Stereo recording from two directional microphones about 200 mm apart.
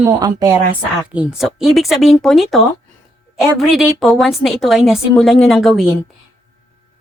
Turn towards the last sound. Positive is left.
turn(degrees=0)  # may be behind; listen again after turning